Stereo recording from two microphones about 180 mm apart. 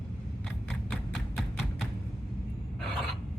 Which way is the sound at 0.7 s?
Centre (ahead or behind).